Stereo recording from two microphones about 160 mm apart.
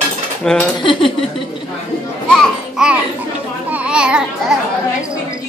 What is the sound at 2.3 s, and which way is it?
Music, 5° right (ahead or behind).